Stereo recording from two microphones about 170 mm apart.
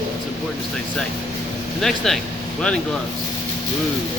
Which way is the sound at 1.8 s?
Centre (ahead or behind).